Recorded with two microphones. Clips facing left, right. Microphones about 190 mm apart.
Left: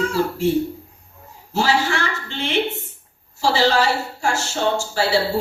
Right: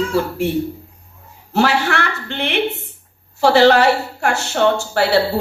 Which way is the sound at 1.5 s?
60° right (ahead or behind).